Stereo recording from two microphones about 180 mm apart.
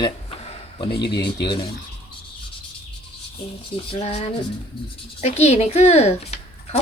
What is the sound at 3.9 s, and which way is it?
A woman's voice, 35° left (ahead or behind).